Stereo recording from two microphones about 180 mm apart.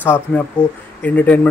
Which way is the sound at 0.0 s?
10° left (ahead or behind).